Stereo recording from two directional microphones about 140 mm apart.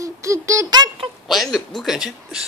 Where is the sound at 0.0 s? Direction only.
20° right (ahead or behind).